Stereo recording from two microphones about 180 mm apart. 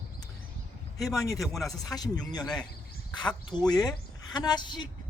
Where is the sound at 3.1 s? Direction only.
25° left (ahead or behind).